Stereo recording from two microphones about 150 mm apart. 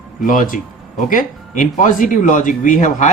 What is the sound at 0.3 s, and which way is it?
Speech, 60° left (ahead or behind).